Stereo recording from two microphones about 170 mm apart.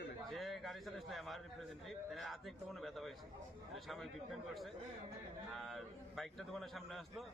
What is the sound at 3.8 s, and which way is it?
Speech, centre (ahead or behind).